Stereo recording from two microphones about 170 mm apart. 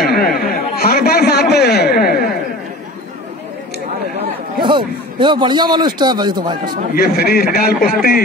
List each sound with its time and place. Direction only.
0.0 s a sound: 65° left (ahead or behind)
4.6 s a man's voice: 30° right (ahead or behind)
7.0 s a man's voice: 65° left (ahead or behind)